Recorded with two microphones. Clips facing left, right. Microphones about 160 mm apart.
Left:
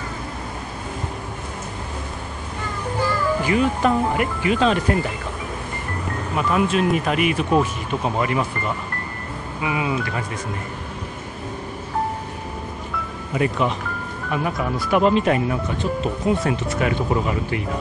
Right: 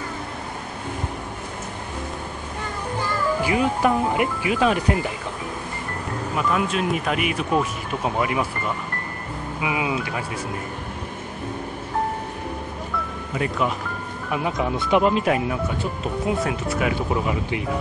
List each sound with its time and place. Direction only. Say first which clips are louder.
3.4 s speech: left 1 dB; 15° right (ahead or behind)
6.3 s speech: left 3 dB; centre (ahead or behind)
9.6 s speech: left 1 dB; 10° right (ahead or behind)
13.4 s speech: left 3 dB; centre (ahead or behind)
14.3 s speech: even; 15° right (ahead or behind)